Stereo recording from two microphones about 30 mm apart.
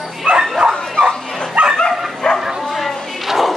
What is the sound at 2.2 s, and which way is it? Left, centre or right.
Bow-wow, centre.